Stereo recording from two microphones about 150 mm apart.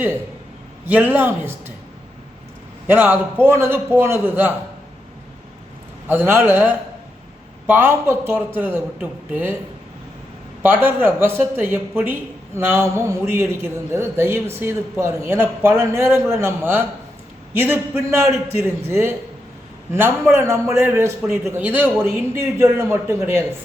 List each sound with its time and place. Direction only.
0.9 s a man's voice: 10° right (ahead or behind)
2.8 s a man's voice: 15° right (ahead or behind)
6.1 s a man's voice: 15° right (ahead or behind)
10.6 s a man's voice: 15° right (ahead or behind)